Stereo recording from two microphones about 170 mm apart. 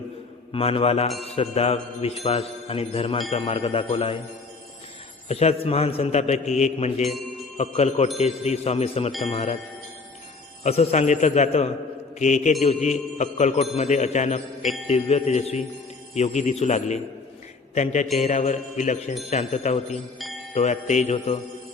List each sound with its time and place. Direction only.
0.5 s mantra: 35° left (ahead or behind)
5.3 s mantra: 35° left (ahead or behind)
10.6 s mantra: 40° left (ahead or behind)
12.2 s a man's voice: 45° left (ahead or behind)
14.8 s mantra: 40° left (ahead or behind)
16.1 s a man's voice: 40° left (ahead or behind)
19.3 s mantra: 40° left (ahead or behind)
20.1 s music: centre (ahead or behind)
20.5 s mantra: 40° left (ahead or behind)